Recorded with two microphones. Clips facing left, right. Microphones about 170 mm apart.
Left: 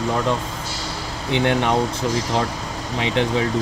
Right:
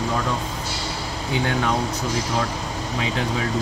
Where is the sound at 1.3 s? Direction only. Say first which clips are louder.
Left 4 dB; 25° left (ahead or behind).